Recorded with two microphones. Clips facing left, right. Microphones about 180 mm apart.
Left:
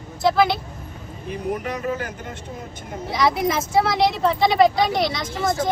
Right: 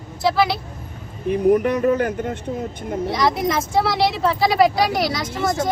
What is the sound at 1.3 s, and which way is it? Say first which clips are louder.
Speech: right 10 dB; 55° right (ahead or behind).